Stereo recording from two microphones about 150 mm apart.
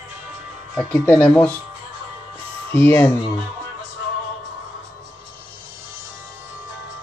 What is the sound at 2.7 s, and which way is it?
Speech, 15° left (ahead or behind).